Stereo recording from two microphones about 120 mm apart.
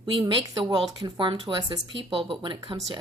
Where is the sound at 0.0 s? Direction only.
45° right (ahead or behind).